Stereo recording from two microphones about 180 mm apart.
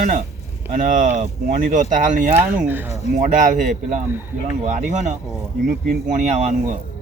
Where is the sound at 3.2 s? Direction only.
45° right (ahead or behind).